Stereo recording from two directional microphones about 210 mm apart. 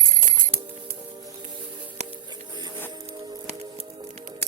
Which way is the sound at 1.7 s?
25° right (ahead or behind).